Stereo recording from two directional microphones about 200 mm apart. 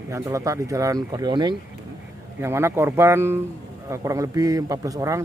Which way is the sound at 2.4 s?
10° right (ahead or behind).